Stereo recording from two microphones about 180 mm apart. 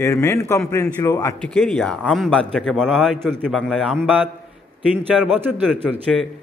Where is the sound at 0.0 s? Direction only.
15° left (ahead or behind).